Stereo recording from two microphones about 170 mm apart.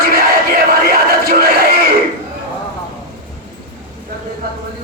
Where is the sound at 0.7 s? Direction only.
65° right (ahead or behind).